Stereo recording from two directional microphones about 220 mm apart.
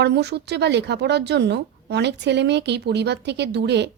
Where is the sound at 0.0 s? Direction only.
50° right (ahead or behind).